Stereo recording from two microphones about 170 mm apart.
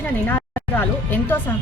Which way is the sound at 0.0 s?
10° left (ahead or behind).